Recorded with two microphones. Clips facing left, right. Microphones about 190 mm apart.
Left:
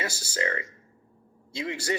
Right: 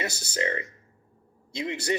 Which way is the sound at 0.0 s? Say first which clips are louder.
Right 1 dB; 20° right (ahead or behind).